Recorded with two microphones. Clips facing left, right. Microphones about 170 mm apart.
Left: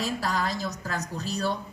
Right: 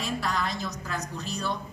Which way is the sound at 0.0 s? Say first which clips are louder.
Left 1 dB; 40° left (ahead or behind).